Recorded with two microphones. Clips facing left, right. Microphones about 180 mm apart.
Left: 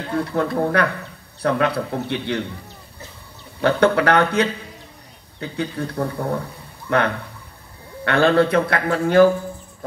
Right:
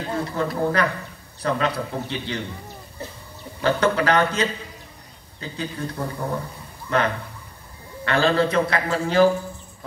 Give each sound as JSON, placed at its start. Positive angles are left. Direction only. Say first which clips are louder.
{"t": 0.2, "sound": "a man's voice", "louder": "left 4 dB", "side_deg": 65}
{"t": 3.6, "sound": "a man's voice", "louder": "left 4 dB", "side_deg": 65}